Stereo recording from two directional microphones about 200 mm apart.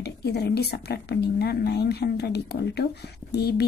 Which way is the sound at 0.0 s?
55° left (ahead or behind).